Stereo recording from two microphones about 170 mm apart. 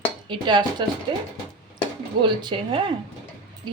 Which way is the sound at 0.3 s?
25° right (ahead or behind).